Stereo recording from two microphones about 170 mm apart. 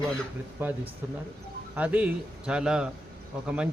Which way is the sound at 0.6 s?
10° right (ahead or behind).